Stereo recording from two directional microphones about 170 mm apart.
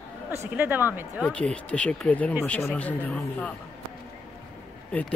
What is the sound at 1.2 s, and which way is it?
Speech, 5° left (ahead or behind).